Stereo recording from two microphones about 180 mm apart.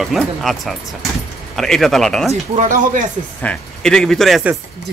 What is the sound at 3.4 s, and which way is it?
Speech, 5° left (ahead or behind).